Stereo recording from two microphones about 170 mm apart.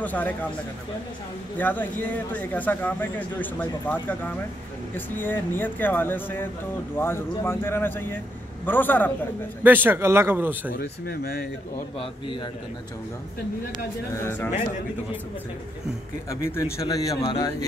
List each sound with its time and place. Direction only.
0.0 s speech: 10° left (ahead or behind)
1.6 s speech: 10° left (ahead or behind)
9.6 s speech: 10° right (ahead or behind)
10.7 s speech: 65° left (ahead or behind)
14.1 s speech: 15° left (ahead or behind)
16.3 s a man's voice: 15° left (ahead or behind)